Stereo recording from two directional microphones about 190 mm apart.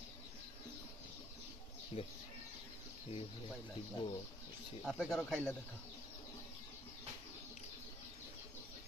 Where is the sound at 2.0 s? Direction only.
30° left (ahead or behind).